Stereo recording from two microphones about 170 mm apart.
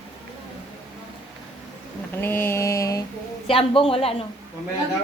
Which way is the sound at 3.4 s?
30° left (ahead or behind).